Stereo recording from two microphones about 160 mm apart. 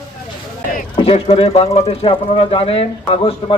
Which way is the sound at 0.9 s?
35° left (ahead or behind).